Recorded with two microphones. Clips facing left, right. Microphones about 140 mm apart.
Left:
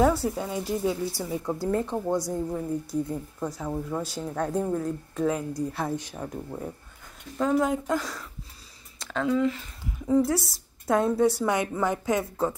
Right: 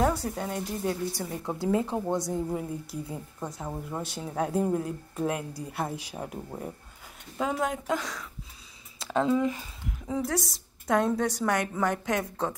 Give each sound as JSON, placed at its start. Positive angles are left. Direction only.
{"t": 0.0, "sound": "a woman's voice", "side_deg": 5}
{"t": 9.1, "sound": "speech", "side_deg": -20}
{"t": 10.0, "sound": "a woman's voice", "side_deg": 0}